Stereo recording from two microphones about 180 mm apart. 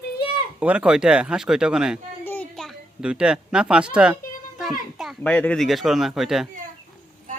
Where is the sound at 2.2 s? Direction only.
10° left (ahead or behind); by 4.1 s 5° right (ahead or behind).